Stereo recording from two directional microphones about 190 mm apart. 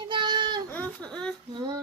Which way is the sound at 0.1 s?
25° right (ahead or behind).